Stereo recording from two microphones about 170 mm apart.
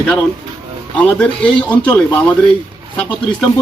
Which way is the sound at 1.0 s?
5° left (ahead or behind).